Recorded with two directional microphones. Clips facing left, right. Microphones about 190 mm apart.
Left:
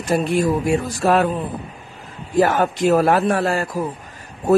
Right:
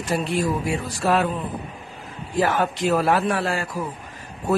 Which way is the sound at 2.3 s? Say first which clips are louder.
Left 5 dB; 45° left (ahead or behind).